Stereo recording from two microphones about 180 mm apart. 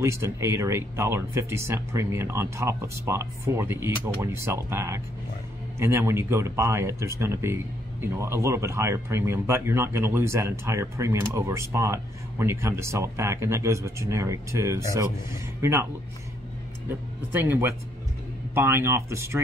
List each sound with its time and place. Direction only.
0.0 s speech: 15° right (ahead or behind)
17.3 s speech: 10° right (ahead or behind)